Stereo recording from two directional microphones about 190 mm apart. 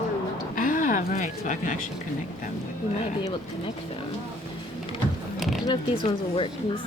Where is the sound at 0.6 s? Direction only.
45° left (ahead or behind).